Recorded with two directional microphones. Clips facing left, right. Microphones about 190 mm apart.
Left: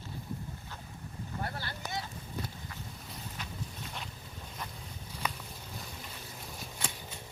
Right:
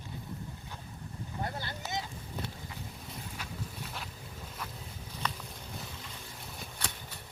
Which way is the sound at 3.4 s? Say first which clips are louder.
Left 3 dB; 10° right (ahead or behind).